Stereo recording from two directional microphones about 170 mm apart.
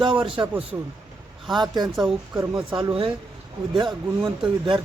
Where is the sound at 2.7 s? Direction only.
30° right (ahead or behind).